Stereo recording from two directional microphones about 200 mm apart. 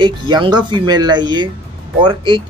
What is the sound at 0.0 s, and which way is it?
Speech, 20° right (ahead or behind).